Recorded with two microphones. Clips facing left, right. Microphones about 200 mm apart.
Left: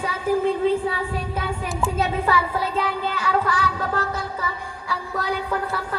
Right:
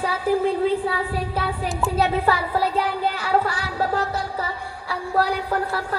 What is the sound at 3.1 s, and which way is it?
Music, 35° right (ahead or behind).